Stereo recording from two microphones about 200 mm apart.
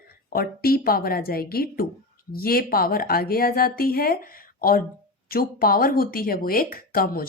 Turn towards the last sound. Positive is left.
turn(degrees=45)  # may be behind; listen again after turning